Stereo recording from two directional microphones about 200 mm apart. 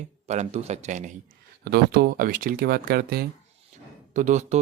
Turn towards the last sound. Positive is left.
turn(degrees=-35)  # may be behind; listen again after turning